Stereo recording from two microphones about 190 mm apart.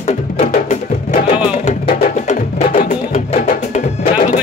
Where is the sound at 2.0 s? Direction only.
40° left (ahead or behind).